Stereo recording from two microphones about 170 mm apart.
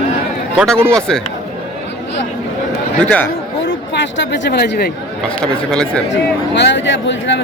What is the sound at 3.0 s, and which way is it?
Speech, 10° left (ahead or behind).